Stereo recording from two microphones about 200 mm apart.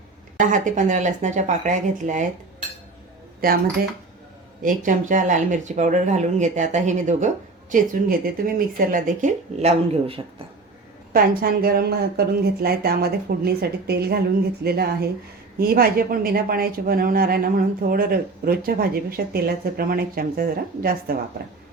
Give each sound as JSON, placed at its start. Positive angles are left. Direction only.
{"t": 0.3, "sound": "speech", "side_deg": -40}
{"t": 3.4, "sound": "speech", "side_deg": -50}
{"t": 4.6, "sound": "speech", "side_deg": -40}
{"t": 11.1, "sound": "speech", "side_deg": -50}